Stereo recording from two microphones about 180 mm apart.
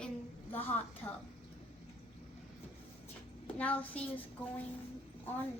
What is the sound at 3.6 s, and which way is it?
A child's voice, 10° left (ahead or behind).